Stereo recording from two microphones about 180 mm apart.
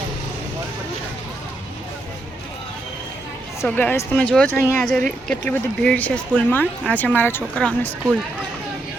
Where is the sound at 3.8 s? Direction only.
10° left (ahead or behind).